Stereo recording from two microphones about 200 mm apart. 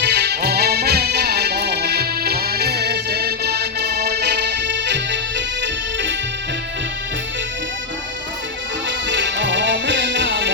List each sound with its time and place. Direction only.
0.0 s music: 55° right (ahead or behind)
9.0 s music: 65° right (ahead or behind)